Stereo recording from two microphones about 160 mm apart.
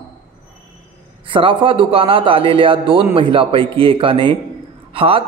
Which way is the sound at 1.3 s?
30° right (ahead or behind).